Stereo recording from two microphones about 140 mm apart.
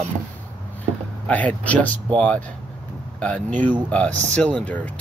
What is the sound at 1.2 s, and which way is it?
Speech, 10° left (ahead or behind).